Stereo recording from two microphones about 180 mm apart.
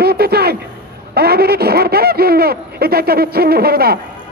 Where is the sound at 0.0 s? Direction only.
60° right (ahead or behind).